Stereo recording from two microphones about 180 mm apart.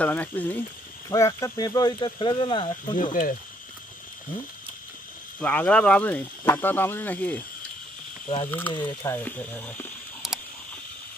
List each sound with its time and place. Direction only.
0.0 s speech: 10° left (ahead or behind); by 3.0 s 25° left (ahead or behind)
3.0 s speech: 50° left (ahead or behind)
5.4 s speech: 10° left (ahead or behind)
8.5 s speech: 10° left (ahead or behind)
10.2 s a sound: centre (ahead or behind)